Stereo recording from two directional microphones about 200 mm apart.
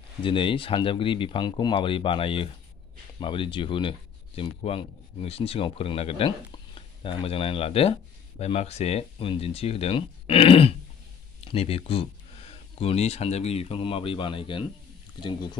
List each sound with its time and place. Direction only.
0.2 s speech: 25° left (ahead or behind)